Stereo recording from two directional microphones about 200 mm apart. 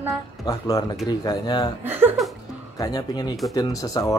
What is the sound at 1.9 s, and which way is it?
Speech, 10° right (ahead or behind).